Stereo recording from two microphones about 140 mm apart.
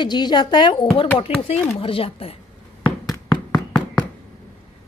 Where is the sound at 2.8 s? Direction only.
10° left (ahead or behind).